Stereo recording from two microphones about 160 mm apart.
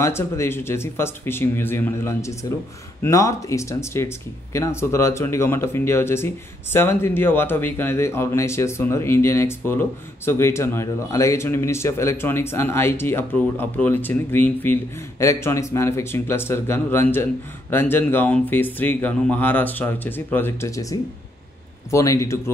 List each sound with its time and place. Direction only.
0.0 s a man's voice: 15° left (ahead or behind)